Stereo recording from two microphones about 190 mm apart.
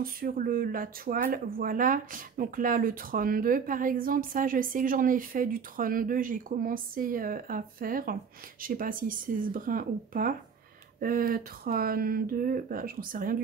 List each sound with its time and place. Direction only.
0.0 s speech: 50° right (ahead or behind)